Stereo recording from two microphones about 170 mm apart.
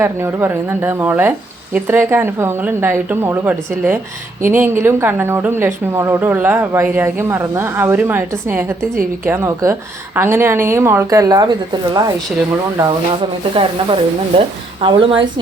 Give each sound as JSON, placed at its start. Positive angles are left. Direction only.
{"t": 0.0, "sound": "speech", "side_deg": -15}
{"t": 13.5, "sound": "speech", "side_deg": -30}